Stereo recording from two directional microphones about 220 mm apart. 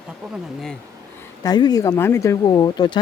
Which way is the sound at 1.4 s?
20° left (ahead or behind).